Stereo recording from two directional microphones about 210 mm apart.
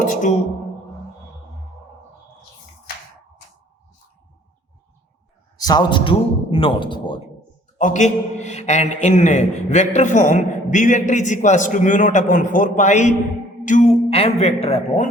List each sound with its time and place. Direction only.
0.0 s a sound: 35° left (ahead or behind)
5.5 s a man's voice: 20° left (ahead or behind)
7.8 s a man's voice: 35° left (ahead or behind)